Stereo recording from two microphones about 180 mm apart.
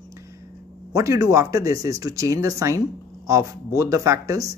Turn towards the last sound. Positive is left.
turn(degrees=-20)  # may be behind; listen again after turning